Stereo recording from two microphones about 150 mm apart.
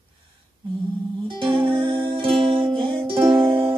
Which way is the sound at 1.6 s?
35° right (ahead or behind).